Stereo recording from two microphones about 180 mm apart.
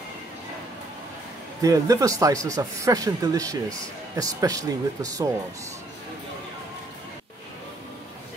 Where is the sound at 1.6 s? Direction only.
20° right (ahead or behind).